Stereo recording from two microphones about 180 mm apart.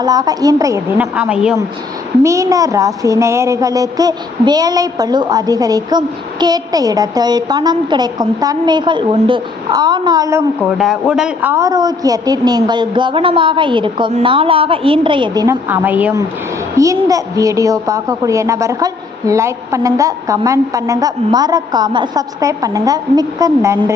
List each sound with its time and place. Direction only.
0.0 s a woman's voice: 20° right (ahead or behind); by 1.5 s 5° right (ahead or behind)
2.2 s a woman's voice: 15° right (ahead or behind)
10.6 s speech: centre (ahead or behind)
11.5 s a woman's voice: 20° right (ahead or behind)
15.7 s a woman's voice: 10° right (ahead or behind)